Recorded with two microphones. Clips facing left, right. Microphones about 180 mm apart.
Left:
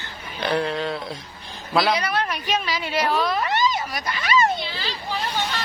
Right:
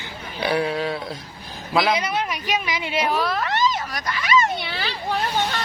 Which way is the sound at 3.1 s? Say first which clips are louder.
Left 1 dB; 10° right (ahead or behind).